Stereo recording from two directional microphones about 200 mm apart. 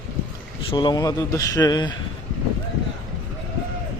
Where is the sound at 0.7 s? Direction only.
20° left (ahead or behind).